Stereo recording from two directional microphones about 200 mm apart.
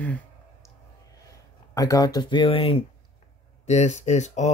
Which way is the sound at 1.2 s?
15° left (ahead or behind).